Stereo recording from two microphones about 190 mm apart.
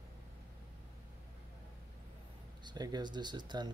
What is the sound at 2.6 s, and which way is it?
Speech, 20° right (ahead or behind).